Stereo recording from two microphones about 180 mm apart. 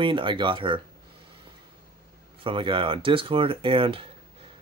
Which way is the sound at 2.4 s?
30° right (ahead or behind).